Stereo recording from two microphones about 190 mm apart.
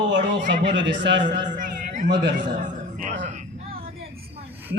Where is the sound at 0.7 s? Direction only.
70° right (ahead or behind).